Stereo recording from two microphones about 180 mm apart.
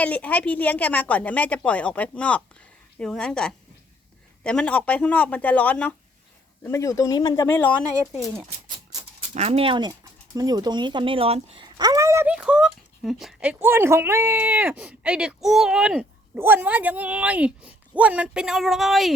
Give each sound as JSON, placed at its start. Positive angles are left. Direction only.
{"t": 0.0, "sound": "a woman's voice", "side_deg": 10}
{"t": 8.2, "sound": "dog", "side_deg": -5}
{"t": 9.3, "sound": "speech", "side_deg": -35}